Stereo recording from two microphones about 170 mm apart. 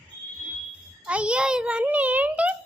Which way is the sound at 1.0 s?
5° right (ahead or behind).